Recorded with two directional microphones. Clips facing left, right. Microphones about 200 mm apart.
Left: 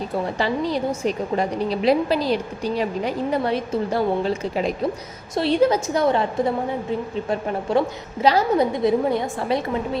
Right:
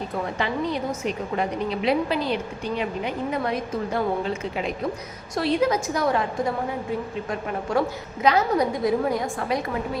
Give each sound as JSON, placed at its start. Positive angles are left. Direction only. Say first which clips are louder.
{"t": 0.3, "sound": "a woman's voice", "louder": "left 3 dB", "side_deg": 35}
{"t": 7.3, "sound": "a woman's voice", "louder": "left 6 dB", "side_deg": 25}